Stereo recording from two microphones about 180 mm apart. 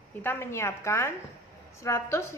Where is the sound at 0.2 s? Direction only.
10° left (ahead or behind).